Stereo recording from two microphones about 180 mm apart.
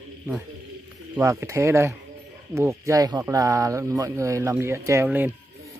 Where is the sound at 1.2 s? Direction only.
15° right (ahead or behind).